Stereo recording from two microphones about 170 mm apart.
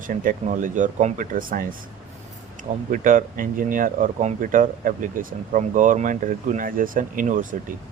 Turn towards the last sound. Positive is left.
turn(degrees=-50)  # may be behind; listen again after turning